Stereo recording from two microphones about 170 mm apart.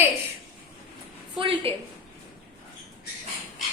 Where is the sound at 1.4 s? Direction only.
30° right (ahead or behind).